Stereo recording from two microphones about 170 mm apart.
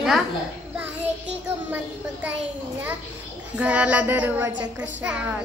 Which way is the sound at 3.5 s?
5° right (ahead or behind).